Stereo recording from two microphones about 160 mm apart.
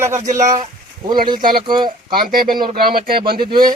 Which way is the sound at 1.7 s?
30° right (ahead or behind).